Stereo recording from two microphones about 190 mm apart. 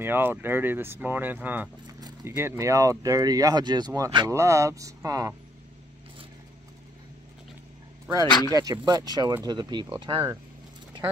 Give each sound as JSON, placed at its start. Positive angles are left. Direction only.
{"t": 0.0, "sound": "speech", "side_deg": -10}
{"t": 8.3, "sound": "speech", "side_deg": 20}
{"t": 8.5, "sound": "speech", "side_deg": -20}